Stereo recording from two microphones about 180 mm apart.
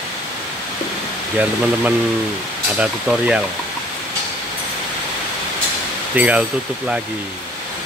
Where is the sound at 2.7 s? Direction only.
5° right (ahead or behind).